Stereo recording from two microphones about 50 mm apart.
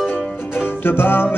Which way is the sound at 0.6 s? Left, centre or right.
Left.